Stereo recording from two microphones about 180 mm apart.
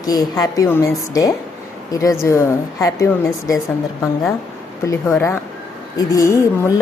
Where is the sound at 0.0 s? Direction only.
20° left (ahead or behind).